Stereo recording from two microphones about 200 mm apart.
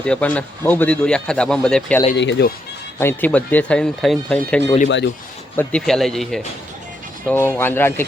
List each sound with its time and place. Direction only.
0.0 s a man's voice: 5° left (ahead or behind)
2.1 s speech: 60° left (ahead or behind)
3.0 s a man's voice: 10° left (ahead or behind)